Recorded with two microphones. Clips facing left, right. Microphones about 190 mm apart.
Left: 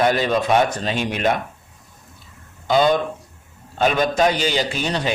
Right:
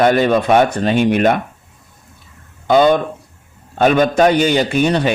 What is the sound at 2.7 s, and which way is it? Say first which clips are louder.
A man's voice: right 5 dB; 55° right (ahead or behind).